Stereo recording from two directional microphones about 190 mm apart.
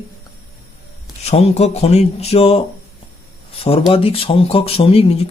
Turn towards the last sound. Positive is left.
turn(degrees=30)  # may be behind; listen again after turning